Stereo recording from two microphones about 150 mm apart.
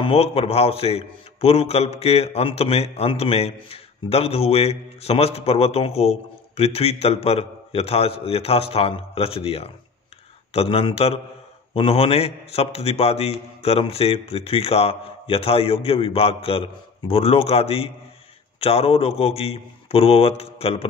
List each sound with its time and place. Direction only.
0.0 s a man's voice: 40° left (ahead or behind)